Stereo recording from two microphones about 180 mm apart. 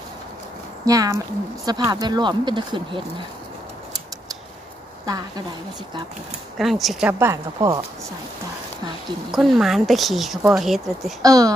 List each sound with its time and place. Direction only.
0.8 s speech: 20° right (ahead or behind)
6.6 s speech: centre (ahead or behind)
9.3 s speech: centre (ahead or behind)
11.2 s speech: 20° right (ahead or behind)